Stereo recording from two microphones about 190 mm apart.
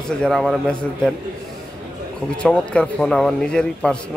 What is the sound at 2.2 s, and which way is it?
A man's voice, 5° left (ahead or behind).